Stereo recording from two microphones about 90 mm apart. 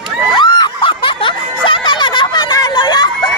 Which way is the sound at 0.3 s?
60° left (ahead or behind).